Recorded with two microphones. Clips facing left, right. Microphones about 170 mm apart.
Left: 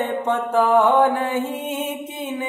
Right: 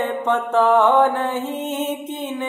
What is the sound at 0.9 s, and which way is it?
Mantra, 10° left (ahead or behind).